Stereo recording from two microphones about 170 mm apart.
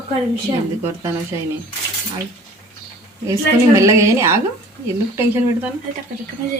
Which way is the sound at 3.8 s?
20° right (ahead or behind).